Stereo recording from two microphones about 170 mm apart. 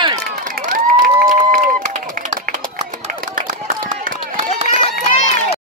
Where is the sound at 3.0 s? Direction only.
50° right (ahead or behind).